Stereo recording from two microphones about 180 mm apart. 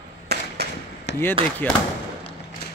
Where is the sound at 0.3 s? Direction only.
65° right (ahead or behind).